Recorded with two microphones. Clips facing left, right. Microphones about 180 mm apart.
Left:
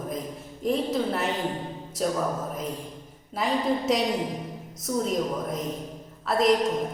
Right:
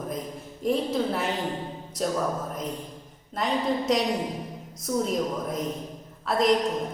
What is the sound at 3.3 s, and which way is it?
Speech, 5° left (ahead or behind).